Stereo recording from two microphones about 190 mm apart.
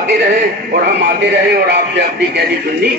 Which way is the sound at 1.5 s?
60° right (ahead or behind).